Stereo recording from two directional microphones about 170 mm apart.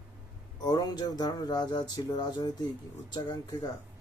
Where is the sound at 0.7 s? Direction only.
25° left (ahead or behind).